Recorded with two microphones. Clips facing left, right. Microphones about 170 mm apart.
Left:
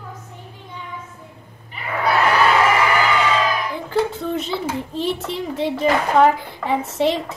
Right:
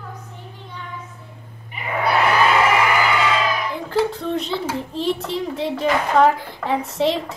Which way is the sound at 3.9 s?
Centre (ahead or behind).